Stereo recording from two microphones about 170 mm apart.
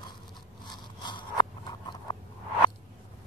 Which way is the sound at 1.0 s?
25° left (ahead or behind).